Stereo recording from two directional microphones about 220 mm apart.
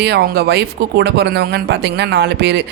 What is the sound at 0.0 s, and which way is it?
Speech, 50° right (ahead or behind).